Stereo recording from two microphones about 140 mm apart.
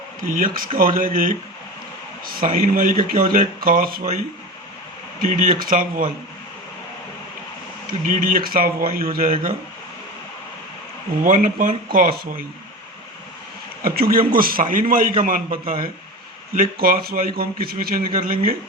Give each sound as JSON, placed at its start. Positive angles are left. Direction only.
{"t": 0.2, "sound": "speech", "side_deg": -80}
{"t": 5.2, "sound": "speech", "side_deg": -80}
{"t": 7.9, "sound": "speech", "side_deg": -75}
{"t": 11.2, "sound": "speech", "side_deg": -75}
{"t": 11.9, "sound": "speech", "side_deg": -90}
{"t": 13.8, "sound": "speech", "side_deg": -90}